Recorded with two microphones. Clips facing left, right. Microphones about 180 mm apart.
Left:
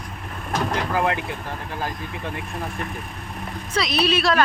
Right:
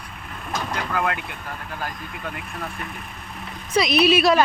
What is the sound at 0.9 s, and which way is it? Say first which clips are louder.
Speech: left 2 dB; 25° left (ahead or behind).